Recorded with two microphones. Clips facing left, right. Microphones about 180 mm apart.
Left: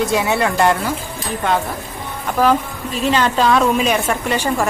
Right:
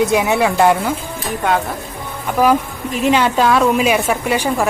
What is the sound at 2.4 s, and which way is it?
A woman's voice, 10° right (ahead or behind).